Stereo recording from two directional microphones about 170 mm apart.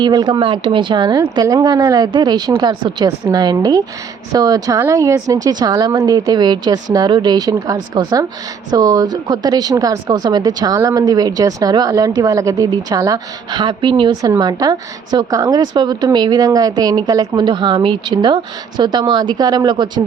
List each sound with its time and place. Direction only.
0.0 s speech: 25° right (ahead or behind)